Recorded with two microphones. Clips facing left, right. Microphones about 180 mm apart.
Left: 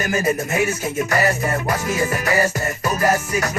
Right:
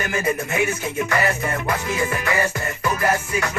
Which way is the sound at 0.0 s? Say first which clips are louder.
Left 3 dB; 40° left (ahead or behind).